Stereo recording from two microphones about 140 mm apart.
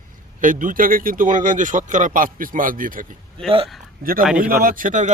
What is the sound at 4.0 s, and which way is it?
A man's voice, 90° right.